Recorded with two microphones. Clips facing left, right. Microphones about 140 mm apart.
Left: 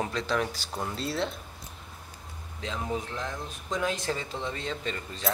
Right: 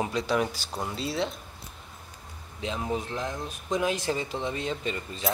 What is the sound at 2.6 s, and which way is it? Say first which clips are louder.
Speech: right 2 dB; 15° right (ahead or behind).